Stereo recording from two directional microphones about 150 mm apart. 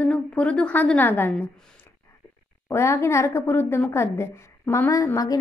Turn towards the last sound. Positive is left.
turn(degrees=25)  # may be behind; listen again after turning